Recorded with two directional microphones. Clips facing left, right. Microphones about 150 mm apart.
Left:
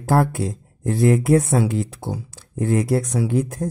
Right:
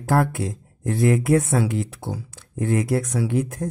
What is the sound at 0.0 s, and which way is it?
Speech, 30° left (ahead or behind).